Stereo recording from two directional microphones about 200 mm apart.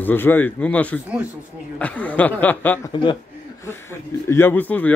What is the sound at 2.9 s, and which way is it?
Speech, 25° left (ahead or behind).